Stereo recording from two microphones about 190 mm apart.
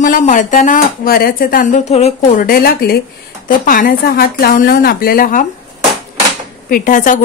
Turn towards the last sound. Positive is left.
turn(degrees=45)  # may be behind; listen again after turning